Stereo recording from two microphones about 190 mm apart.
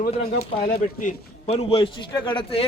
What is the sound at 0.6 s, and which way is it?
A man's voice, 40° left (ahead or behind).